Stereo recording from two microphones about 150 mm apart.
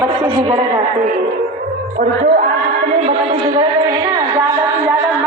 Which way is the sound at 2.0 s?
65° right (ahead or behind).